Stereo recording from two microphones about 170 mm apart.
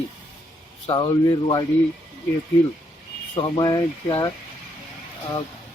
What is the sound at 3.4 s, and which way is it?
Speech, 25° left (ahead or behind).